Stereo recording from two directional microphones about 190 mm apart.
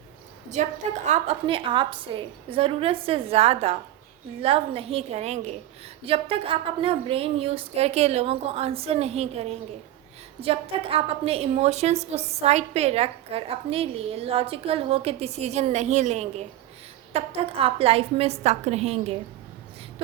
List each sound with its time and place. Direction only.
0.6 s a woman's voice: 40° right (ahead or behind)